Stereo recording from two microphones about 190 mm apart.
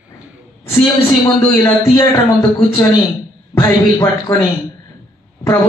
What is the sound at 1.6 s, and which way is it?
Speech, 20° left (ahead or behind).